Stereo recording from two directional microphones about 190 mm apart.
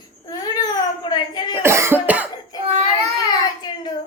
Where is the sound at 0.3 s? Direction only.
20° left (ahead or behind).